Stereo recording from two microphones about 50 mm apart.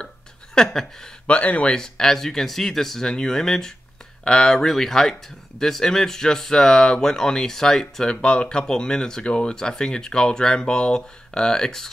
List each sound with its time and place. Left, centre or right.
0.6 s speech: centre
1.2 s speech: left
1.7 s speech: centre